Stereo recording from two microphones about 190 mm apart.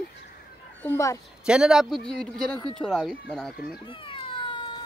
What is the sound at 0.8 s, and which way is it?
Speech, 15° left (ahead or behind).